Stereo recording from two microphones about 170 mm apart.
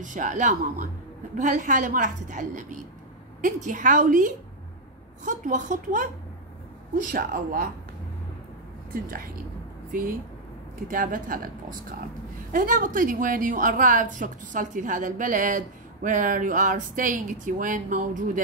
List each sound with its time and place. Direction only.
0.0 s a woman's voice: 45° right (ahead or behind)
9.0 s speech: 55° right (ahead or behind)
10.9 s a woman's voice: 55° right (ahead or behind)
12.5 s a woman's voice: 55° right (ahead or behind)